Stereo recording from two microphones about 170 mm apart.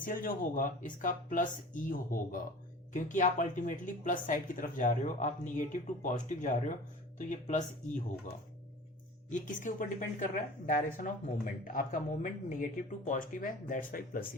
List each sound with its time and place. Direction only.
0.0 s speech: 55° left (ahead or behind)
9.3 s speech: 50° left (ahead or behind)